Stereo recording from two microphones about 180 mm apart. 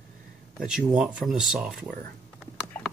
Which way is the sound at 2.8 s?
10° left (ahead or behind).